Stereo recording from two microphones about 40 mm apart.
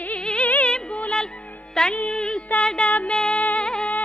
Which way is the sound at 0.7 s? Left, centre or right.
Left.